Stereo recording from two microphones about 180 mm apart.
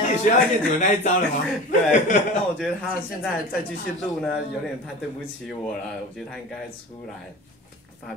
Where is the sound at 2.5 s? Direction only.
Centre (ahead or behind).